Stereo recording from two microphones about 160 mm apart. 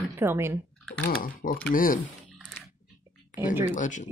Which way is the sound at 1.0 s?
60° left (ahead or behind).